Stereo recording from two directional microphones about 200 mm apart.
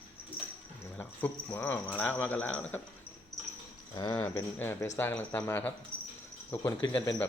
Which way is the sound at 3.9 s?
20° left (ahead or behind).